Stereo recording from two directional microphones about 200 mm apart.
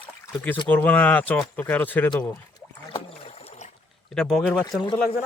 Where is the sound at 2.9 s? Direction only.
30° left (ahead or behind).